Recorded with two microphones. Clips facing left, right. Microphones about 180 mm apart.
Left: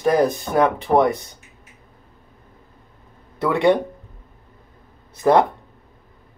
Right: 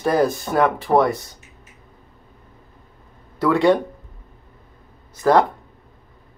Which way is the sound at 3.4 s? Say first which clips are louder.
Right 1 dB; 20° left (ahead or behind).